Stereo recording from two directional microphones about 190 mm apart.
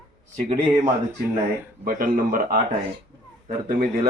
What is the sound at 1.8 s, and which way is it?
Speech, 45° right (ahead or behind).